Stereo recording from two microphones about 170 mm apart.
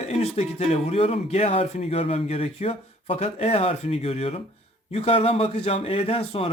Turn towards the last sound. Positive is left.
turn(degrees=35)  # may be behind; listen again after turning